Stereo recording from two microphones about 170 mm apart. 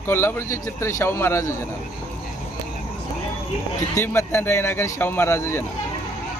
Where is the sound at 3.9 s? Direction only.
15° left (ahead or behind).